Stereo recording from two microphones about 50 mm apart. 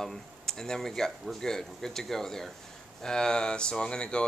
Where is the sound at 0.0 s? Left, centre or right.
Centre.